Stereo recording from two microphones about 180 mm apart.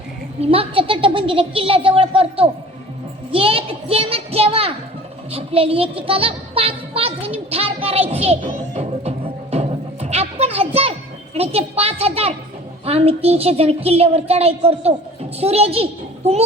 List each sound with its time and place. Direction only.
0.4 s a woman's voice: 30° right (ahead or behind)
3.3 s a sound: 30° right (ahead or behind)
5.3 s a woman's voice: 35° right (ahead or behind)
8.1 s music: 35° right (ahead or behind)
11.3 s a woman's voice: 35° right (ahead or behind)